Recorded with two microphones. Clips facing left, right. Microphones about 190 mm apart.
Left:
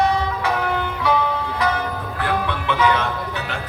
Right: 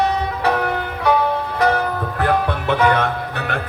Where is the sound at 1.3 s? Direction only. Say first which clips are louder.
Right 4 dB; 50° right (ahead or behind).